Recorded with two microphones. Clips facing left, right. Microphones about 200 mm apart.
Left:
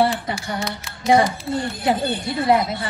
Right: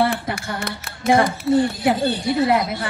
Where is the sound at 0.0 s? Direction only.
55° right (ahead or behind).